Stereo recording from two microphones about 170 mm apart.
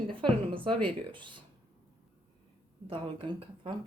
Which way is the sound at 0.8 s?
30° right (ahead or behind).